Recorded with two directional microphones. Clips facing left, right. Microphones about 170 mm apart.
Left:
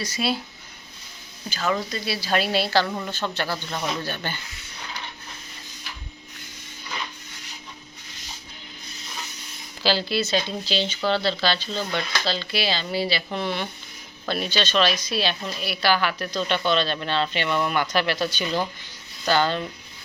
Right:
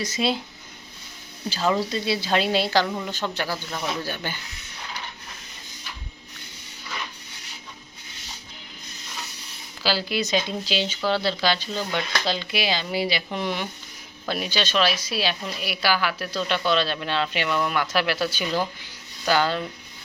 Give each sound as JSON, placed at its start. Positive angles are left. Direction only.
{"t": 0.0, "sound": "a woman's voice", "side_deg": -20}
{"t": 1.5, "sound": "a woman's voice", "side_deg": -30}
{"t": 9.8, "sound": "speech", "side_deg": -10}